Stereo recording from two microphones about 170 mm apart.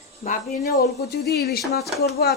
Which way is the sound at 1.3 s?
70° left (ahead or behind).